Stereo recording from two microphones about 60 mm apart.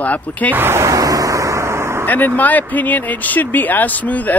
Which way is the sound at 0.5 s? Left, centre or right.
Right.